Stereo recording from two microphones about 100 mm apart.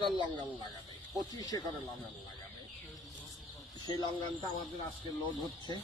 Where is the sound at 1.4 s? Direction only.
40° left (ahead or behind).